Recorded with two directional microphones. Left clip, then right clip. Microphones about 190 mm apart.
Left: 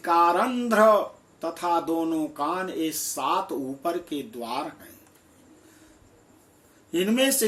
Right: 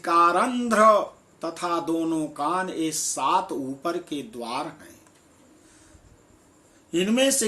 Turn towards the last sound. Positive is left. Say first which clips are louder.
# right 1 dB
turn(degrees=-10)  # may be behind; listen again after turning